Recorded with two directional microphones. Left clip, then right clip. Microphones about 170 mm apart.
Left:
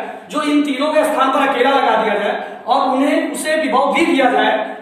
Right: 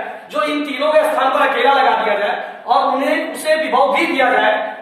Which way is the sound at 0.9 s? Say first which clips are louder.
Right 1 dB; 25° left (ahead or behind).